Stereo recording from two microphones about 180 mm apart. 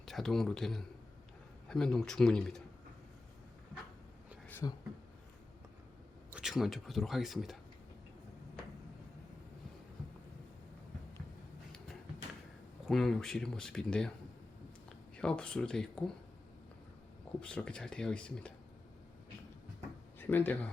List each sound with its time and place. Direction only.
0.0 s speech: centre (ahead or behind)
4.6 s speech: 15° left (ahead or behind)
6.3 s speech: centre (ahead or behind)
12.8 s speech: centre (ahead or behind)
15.1 s speech: 5° left (ahead or behind)
17.4 s speech: 5° left (ahead or behind)
20.1 s speech: 10° left (ahead or behind)